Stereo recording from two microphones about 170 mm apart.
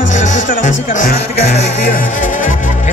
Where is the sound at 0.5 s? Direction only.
50° left (ahead or behind).